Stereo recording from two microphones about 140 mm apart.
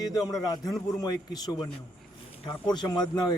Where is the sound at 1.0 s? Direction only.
30° left (ahead or behind).